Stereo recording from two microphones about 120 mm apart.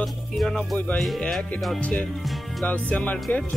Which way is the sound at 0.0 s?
Centre (ahead or behind).